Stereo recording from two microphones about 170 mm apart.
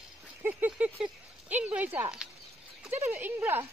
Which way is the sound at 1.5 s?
10° right (ahead or behind).